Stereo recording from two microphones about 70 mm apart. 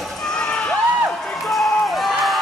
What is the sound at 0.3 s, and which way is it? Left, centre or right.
Crowd, centre.